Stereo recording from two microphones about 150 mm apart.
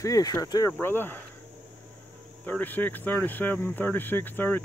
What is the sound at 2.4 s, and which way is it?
Speech, 10° left (ahead or behind).